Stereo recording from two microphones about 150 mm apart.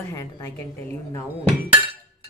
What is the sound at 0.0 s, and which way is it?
Speech, 20° left (ahead or behind).